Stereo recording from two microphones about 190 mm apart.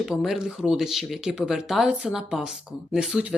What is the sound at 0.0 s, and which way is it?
Speech, centre (ahead or behind).